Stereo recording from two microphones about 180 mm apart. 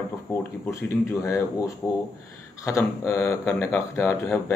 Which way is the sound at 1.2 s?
15° left (ahead or behind).